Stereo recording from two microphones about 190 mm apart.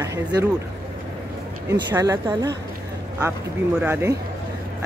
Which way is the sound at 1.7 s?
15° right (ahead or behind).